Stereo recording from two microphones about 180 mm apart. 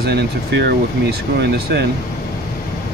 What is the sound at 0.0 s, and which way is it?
Speech, 65° right (ahead or behind).